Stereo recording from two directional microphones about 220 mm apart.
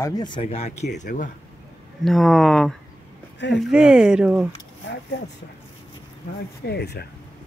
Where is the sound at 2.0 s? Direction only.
Centre (ahead or behind).